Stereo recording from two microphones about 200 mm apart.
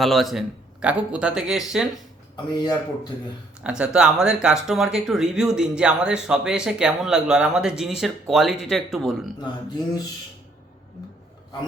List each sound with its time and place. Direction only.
0.0 s speech: centre (ahead or behind)
2.3 s speech: 20° left (ahead or behind)
3.6 s speech: 5° right (ahead or behind)